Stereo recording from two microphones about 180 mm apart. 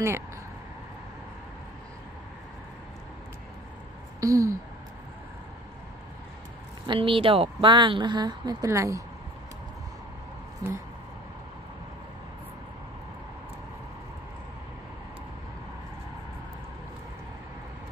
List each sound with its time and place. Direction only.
4.2 s speech: 20° right (ahead or behind)
6.9 s speech: 30° right (ahead or behind)
10.6 s speech: 20° right (ahead or behind)